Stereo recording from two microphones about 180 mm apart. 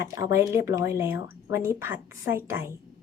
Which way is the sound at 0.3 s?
15° right (ahead or behind).